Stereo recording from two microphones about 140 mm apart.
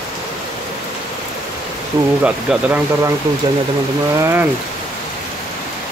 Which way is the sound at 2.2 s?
10° right (ahead or behind).